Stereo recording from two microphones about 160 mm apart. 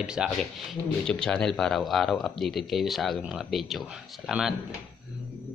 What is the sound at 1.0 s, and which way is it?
Speech, 5° left (ahead or behind).